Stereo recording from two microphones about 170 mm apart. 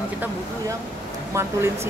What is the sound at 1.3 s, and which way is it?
Speech, 15° right (ahead or behind).